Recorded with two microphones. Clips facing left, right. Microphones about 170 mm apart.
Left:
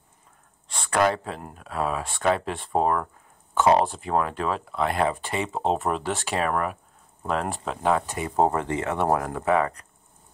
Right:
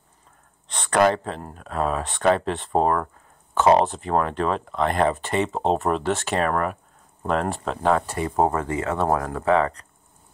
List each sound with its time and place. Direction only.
0.7 s a sound: 10° left (ahead or behind)
1.0 s speech: 5° left (ahead or behind)
8.4 s speech: 20° left (ahead or behind)